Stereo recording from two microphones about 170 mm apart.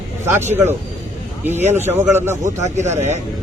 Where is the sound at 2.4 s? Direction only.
45° right (ahead or behind).